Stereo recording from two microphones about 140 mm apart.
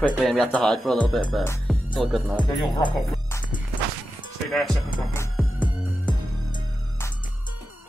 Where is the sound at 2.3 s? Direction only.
30° left (ahead or behind).